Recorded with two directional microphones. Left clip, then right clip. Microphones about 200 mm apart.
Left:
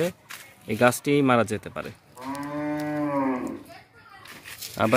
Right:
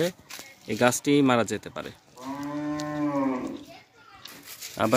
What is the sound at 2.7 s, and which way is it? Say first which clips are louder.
Moo: left 2 dB; 30° right (ahead or behind).